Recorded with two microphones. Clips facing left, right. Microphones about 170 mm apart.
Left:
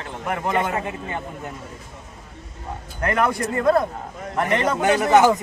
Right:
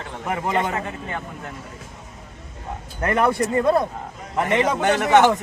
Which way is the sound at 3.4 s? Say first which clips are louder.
Even; 20° right (ahead or behind).